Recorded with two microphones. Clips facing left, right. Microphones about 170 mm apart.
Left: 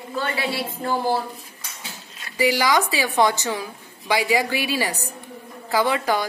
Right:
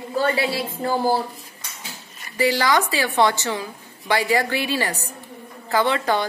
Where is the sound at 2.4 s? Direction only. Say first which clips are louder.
Even; 10° left (ahead or behind).